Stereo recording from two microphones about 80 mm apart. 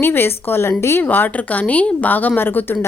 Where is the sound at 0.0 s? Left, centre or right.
Left.